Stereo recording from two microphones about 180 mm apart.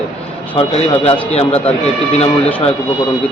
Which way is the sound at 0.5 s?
30° left (ahead or behind).